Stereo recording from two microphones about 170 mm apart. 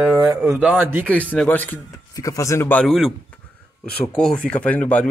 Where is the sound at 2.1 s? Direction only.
20° left (ahead or behind).